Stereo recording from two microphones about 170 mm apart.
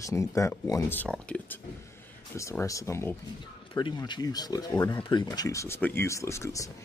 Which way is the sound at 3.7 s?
25° left (ahead or behind).